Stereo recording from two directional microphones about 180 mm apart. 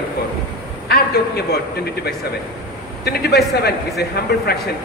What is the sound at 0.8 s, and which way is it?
Speech, 60° left (ahead or behind).